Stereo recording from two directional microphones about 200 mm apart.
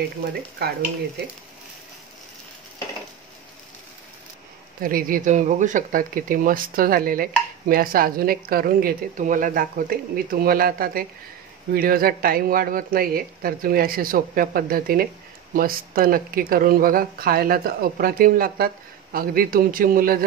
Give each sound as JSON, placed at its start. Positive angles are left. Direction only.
{"t": 4.8, "sound": "speech", "side_deg": -45}